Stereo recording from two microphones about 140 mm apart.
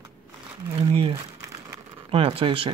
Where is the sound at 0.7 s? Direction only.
45° right (ahead or behind).